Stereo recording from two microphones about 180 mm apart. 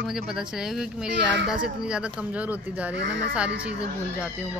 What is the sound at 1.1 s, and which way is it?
Speech, 75° right (ahead or behind).